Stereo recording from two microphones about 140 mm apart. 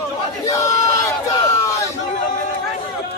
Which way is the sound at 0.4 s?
25° left (ahead or behind).